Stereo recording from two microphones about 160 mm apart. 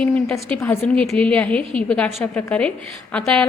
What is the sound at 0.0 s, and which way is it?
A woman's voice, 5° left (ahead or behind).